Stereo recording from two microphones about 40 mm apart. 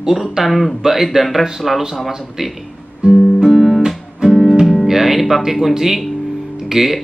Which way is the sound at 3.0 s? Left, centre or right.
Right.